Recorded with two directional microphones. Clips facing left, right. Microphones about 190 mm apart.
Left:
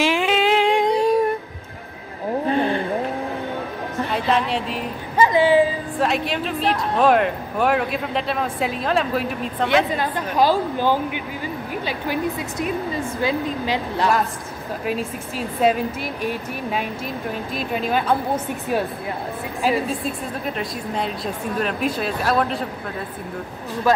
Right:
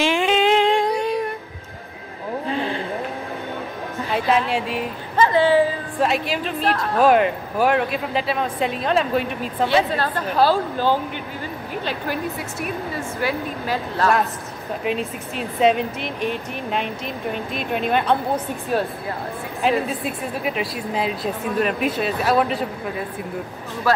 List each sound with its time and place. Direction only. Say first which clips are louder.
0.0 s a sound: right 1 dB; 5° left (ahead or behind)
2.5 s vehicle: left 5 dB; 55° left (ahead or behind)
4.1 s a woman's voice: right 2 dB; centre (ahead or behind)
5.1 s a sound: left 1 dB; 10° left (ahead or behind)
5.9 s speech: right 1 dB; centre (ahead or behind)
9.9 s a woman's voice: even; 15° left (ahead or behind)
14.9 s speech: right 1 dB; centre (ahead or behind)
19.6 s speech: right 1 dB; 5° right (ahead or behind)